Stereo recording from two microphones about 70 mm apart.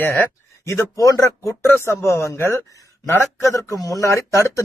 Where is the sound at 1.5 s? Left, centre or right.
Left.